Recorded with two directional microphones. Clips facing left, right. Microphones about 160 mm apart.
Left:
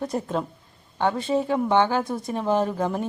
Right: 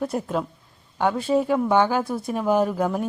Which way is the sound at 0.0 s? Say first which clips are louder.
Right 1 dB; 5° right (ahead or behind).